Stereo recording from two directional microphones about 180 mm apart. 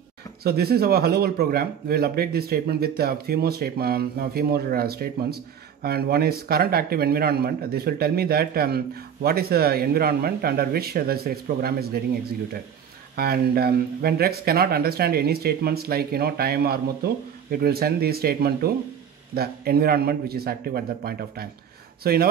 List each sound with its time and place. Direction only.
0.4 s a man's voice: 60° right (ahead or behind)